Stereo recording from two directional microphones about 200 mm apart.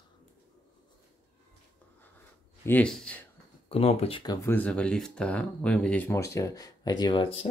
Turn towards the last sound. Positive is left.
turn(degrees=25)  # may be behind; listen again after turning